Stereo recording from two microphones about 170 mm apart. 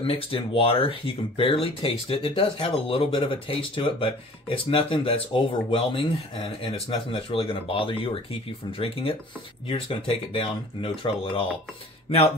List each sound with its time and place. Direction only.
0.0 s speech: 35° left (ahead or behind)